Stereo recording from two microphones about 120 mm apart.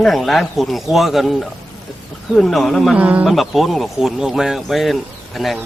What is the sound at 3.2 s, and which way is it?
Speech, centre (ahead or behind).